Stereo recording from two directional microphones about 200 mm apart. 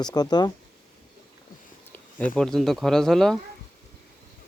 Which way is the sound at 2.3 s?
Centre (ahead or behind).